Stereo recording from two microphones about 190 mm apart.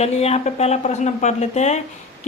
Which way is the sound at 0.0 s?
35° left (ahead or behind).